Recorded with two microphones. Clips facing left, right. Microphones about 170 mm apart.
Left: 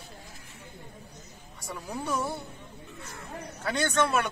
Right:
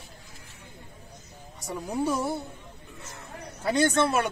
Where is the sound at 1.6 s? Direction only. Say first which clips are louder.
Right 6 dB; 20° right (ahead or behind).